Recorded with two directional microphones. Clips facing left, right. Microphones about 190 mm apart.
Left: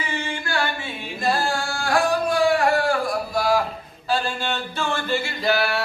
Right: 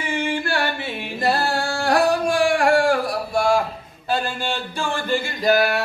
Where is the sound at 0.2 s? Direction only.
65° right (ahead or behind).